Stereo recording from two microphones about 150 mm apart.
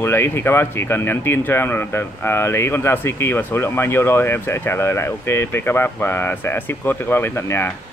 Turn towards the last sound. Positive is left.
turn(degrees=15)  # may be behind; listen again after turning